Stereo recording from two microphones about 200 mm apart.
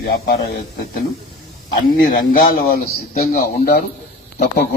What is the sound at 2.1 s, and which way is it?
A man's voice, 45° left (ahead or behind).